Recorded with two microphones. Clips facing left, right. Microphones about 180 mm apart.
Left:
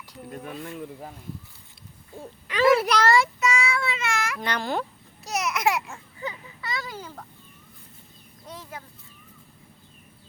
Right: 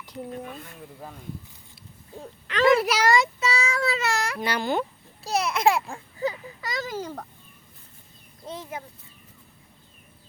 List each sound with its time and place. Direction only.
2.5 s a sound: 5° left (ahead or behind)
3.4 s child singing: 35° right (ahead or behind)
4.4 s speech: 5° right (ahead or behind)
5.2 s speech: 30° right (ahead or behind)
8.4 s a child's voice: 20° right (ahead or behind)